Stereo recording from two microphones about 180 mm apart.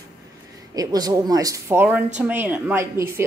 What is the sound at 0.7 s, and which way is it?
Speech, 20° right (ahead or behind).